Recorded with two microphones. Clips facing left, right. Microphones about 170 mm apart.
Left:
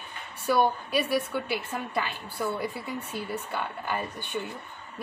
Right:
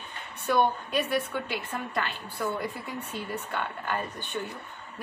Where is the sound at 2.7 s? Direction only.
65° left (ahead or behind).